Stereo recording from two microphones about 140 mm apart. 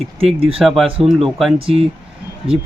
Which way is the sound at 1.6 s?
45° right (ahead or behind).